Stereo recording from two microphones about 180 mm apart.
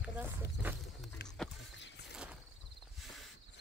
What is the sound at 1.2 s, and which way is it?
Vehicle, 65° left (ahead or behind).